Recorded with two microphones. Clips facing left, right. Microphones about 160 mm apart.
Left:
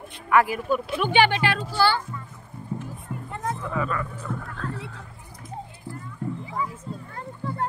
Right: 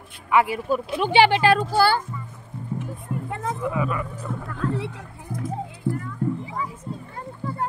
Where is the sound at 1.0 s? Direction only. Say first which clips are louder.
Right 5 dB; 30° right (ahead or behind).